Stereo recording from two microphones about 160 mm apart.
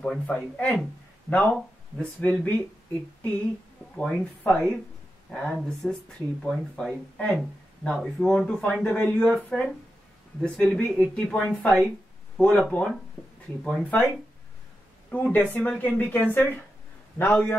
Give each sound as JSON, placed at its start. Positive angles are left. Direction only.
{"t": 0.0, "sound": "speech", "side_deg": 5}
{"t": 3.9, "sound": "speech", "side_deg": 5}